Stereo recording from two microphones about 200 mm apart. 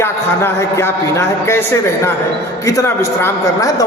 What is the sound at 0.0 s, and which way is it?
A man's voice, 15° left (ahead or behind).